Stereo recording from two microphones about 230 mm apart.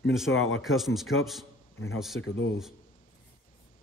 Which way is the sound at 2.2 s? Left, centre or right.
Left.